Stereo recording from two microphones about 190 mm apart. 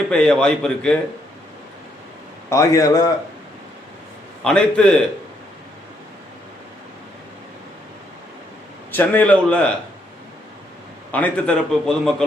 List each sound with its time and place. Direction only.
0.1 s a man's voice: 5° left (ahead or behind)
2.5 s a man's voice: 15° left (ahead or behind)
4.4 s a man's voice: 5° left (ahead or behind)
8.9 s a man's voice: 10° left (ahead or behind)
11.1 s a man's voice: 5° left (ahead or behind)